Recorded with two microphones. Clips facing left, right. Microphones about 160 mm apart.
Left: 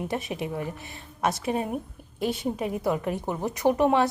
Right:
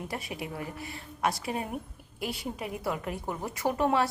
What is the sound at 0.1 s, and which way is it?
A woman's voice, 20° left (ahead or behind).